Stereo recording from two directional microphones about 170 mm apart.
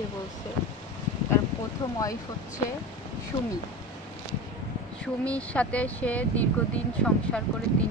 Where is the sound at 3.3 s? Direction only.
25° left (ahead or behind).